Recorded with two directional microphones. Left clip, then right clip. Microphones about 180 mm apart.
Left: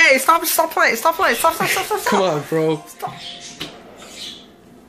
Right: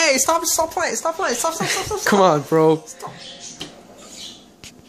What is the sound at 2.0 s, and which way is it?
Speech, 45° right (ahead or behind).